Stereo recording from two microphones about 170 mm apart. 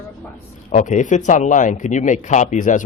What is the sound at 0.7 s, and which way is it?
Speech, 45° left (ahead or behind).